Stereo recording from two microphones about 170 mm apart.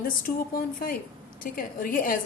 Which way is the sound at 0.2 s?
60° left (ahead or behind).